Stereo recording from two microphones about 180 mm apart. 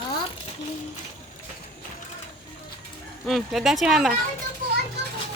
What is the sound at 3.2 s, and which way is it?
Speech, centre (ahead or behind).